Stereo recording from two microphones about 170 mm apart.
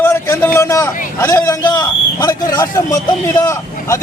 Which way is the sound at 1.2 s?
15° left (ahead or behind).